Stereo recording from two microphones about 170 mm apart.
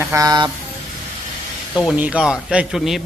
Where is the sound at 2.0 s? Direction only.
5° right (ahead or behind).